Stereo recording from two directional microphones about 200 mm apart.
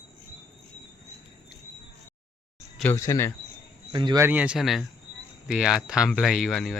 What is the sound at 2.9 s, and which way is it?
Speech, 15° left (ahead or behind).